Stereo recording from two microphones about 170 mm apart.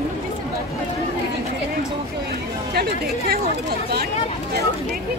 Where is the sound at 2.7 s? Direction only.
65° right (ahead or behind).